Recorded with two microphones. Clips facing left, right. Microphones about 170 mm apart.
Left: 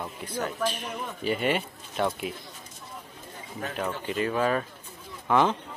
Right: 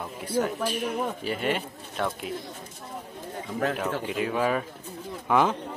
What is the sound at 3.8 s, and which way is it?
Speech, 5° right (ahead or behind).